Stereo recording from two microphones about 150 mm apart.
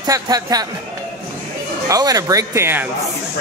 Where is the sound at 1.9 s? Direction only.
25° right (ahead or behind).